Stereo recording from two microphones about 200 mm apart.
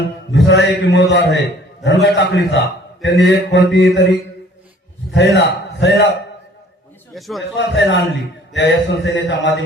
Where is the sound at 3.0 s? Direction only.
60° left (ahead or behind).